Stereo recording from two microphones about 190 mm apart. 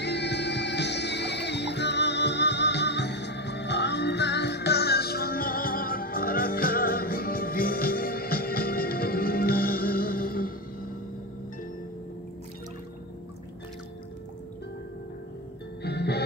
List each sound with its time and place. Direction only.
0.0 s music: 65° left (ahead or behind)
15.8 s music: 60° left (ahead or behind)